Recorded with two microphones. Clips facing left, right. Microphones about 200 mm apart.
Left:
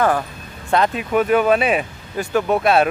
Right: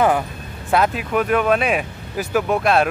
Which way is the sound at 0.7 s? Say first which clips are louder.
Even; 5° right (ahead or behind).